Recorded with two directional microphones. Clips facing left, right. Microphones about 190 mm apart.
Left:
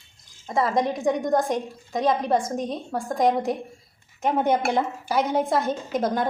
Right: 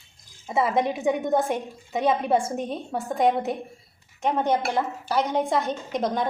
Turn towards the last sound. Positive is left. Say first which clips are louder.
# left 1 dB
turn(degrees=5)  # may be behind; listen again after turning